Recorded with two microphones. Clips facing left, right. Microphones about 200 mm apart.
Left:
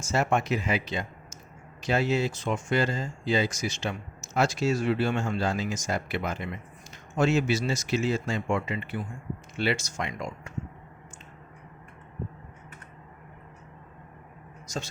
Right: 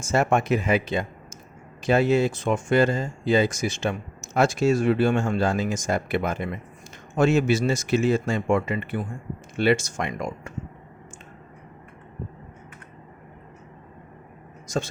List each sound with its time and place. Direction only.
0.0 s speech: 50° right (ahead or behind)